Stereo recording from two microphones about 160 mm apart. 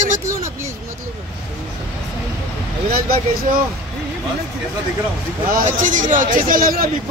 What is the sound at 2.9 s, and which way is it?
Speech, 65° right (ahead or behind).